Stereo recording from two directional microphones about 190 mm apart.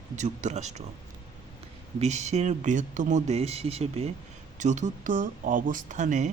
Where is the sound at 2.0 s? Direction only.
35° right (ahead or behind).